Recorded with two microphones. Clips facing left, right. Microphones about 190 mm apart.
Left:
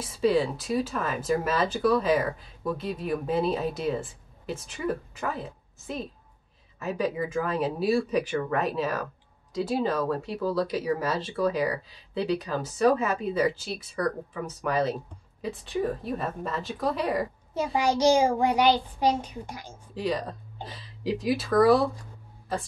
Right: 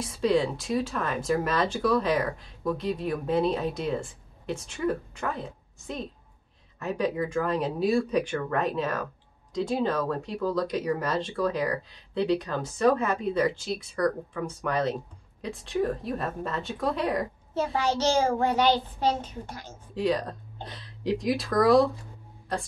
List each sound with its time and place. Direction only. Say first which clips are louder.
0.0 s speech: left 1 dB; 5° left (ahead or behind)
17.7 s a child's voice: left 4 dB; 15° left (ahead or behind)
19.9 s speech: right 3 dB; centre (ahead or behind)